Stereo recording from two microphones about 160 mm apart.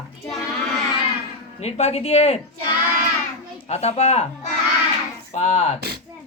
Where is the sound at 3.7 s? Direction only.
40° left (ahead or behind).